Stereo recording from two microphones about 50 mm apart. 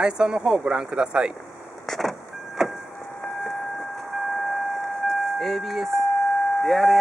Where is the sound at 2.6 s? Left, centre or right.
Centre.